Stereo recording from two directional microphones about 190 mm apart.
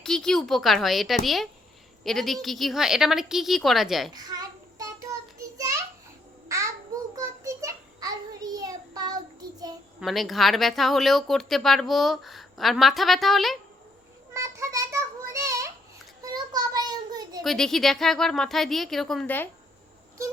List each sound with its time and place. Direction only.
0.0 s speech: 5° left (ahead or behind)
4.1 s a sound: 20° right (ahead or behind)
10.0 s speech: centre (ahead or behind)
14.3 s child singing: 15° right (ahead or behind)
17.4 s speech: centre (ahead or behind)